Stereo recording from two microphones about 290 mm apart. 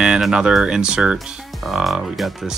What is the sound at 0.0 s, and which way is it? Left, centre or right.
Speech, centre.